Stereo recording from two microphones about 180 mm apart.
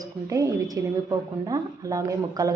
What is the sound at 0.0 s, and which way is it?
A woman's voice, 20° right (ahead or behind).